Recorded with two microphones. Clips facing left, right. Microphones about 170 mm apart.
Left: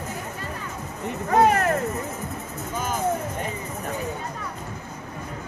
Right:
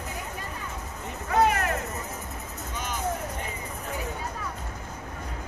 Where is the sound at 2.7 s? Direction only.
50° left (ahead or behind).